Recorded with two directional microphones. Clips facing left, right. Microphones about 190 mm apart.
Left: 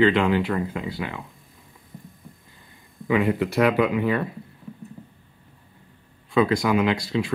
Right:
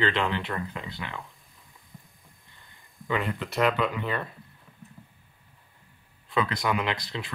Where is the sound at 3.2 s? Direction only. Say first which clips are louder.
Left 10 dB; 15° left (ahead or behind).